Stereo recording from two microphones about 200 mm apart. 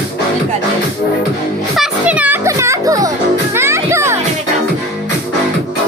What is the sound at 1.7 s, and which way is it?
Music, 5° right (ahead or behind).